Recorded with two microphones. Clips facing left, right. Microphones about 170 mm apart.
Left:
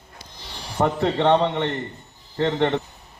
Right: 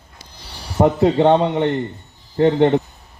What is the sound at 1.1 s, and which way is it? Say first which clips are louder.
A man's voice: right 4 dB; 35° right (ahead or behind).